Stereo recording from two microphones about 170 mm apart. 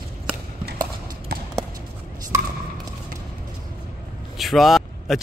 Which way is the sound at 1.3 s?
70° right (ahead or behind).